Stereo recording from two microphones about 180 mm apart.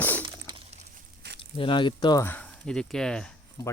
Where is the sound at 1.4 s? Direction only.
30° left (ahead or behind); by 3.4 s 5° left (ahead or behind).